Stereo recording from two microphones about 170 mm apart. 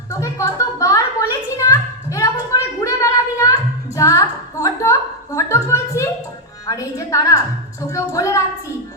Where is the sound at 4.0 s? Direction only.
20° left (ahead or behind).